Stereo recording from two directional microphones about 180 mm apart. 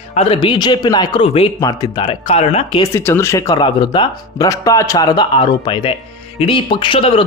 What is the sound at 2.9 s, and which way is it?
A man's voice, 15° left (ahead or behind).